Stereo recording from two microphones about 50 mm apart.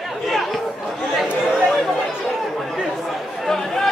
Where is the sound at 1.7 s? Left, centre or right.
Centre.